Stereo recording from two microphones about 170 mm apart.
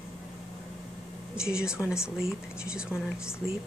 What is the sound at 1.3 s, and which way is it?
Speech, 5° right (ahead or behind).